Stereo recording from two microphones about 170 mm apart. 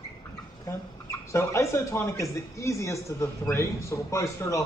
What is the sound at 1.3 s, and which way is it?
Speech, 15° left (ahead or behind).